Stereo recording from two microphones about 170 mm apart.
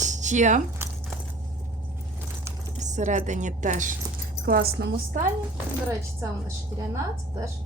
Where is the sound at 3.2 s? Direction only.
45° right (ahead or behind).